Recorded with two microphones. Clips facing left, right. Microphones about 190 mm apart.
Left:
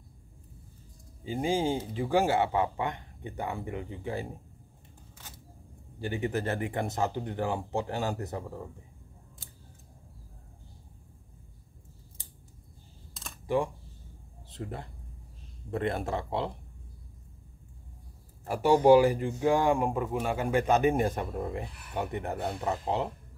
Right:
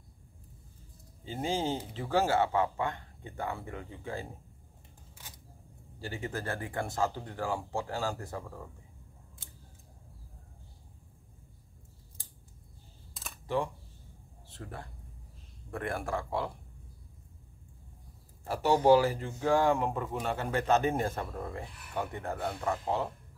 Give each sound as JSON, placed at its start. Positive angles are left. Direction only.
{"t": 1.2, "sound": "speech", "side_deg": 10}
{"t": 5.9, "sound": "speech", "side_deg": 20}
{"t": 14.5, "sound": "speech", "side_deg": 20}
{"t": 18.5, "sound": "speech", "side_deg": 15}